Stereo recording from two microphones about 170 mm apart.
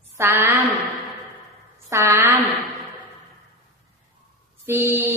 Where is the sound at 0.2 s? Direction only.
15° right (ahead or behind).